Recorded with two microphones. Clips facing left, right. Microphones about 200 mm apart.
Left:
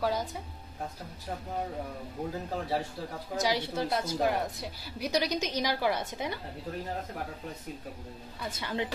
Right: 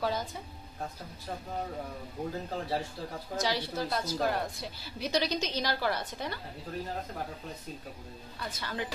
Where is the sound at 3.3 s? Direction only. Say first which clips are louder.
Left 2 dB; 15° left (ahead or behind).